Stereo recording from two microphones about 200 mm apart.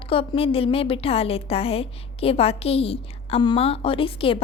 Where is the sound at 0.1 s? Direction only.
30° left (ahead or behind).